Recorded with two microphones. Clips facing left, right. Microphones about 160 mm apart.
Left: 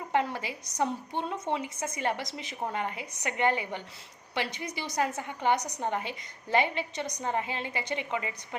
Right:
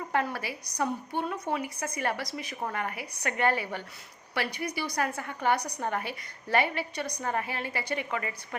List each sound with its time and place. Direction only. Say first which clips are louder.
0.1 s a woman's voice: left 2 dB; 20° left (ahead or behind)